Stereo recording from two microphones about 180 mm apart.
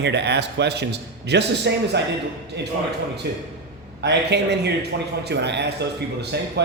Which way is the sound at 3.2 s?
70° right (ahead or behind).